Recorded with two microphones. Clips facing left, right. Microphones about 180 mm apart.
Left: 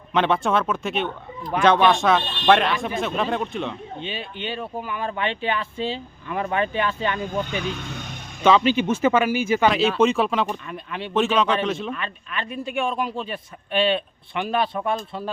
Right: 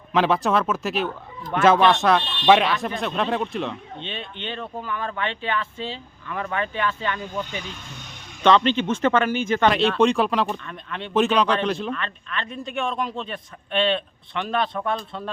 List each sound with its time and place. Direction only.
0.1 s speech: centre (ahead or behind); by 7.4 s 20° left (ahead or behind)
7.5 s speech: 70° left (ahead or behind)
8.4 s speech: 5° left (ahead or behind)